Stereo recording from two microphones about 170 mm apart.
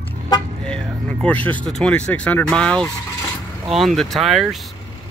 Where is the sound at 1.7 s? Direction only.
5° left (ahead or behind).